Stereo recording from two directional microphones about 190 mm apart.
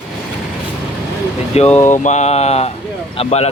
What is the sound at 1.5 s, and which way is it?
Speech, 35° left (ahead or behind).